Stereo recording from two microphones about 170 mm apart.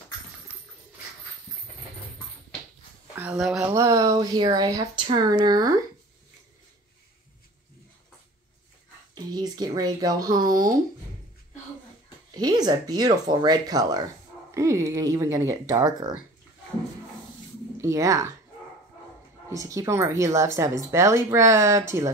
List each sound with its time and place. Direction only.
3.2 s speech: 5° right (ahead or behind)
3.6 s speech: 20° right (ahead or behind)
9.1 s speech: 25° right (ahead or behind)
12.4 s speech: 25° right (ahead or behind)
17.7 s speech: 20° right (ahead or behind)
19.5 s speech: 20° right (ahead or behind)